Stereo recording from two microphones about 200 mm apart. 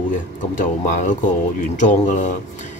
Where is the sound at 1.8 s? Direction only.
40° left (ahead or behind).